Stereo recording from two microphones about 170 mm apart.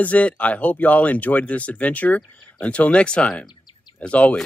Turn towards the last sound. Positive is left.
turn(degrees=10)  # may be behind; listen again after turning